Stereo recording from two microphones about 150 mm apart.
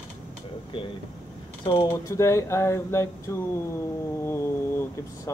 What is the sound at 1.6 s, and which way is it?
Speech, 30° left (ahead or behind).